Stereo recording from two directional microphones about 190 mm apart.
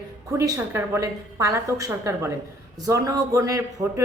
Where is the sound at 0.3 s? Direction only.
15° right (ahead or behind).